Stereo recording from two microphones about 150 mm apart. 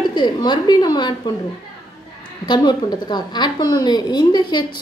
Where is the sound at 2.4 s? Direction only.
30° left (ahead or behind).